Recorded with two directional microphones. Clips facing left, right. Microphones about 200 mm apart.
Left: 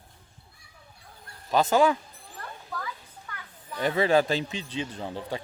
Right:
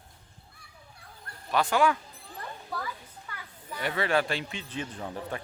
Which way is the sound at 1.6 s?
25° left (ahead or behind).